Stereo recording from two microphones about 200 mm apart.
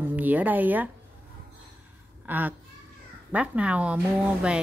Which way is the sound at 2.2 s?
10° right (ahead or behind).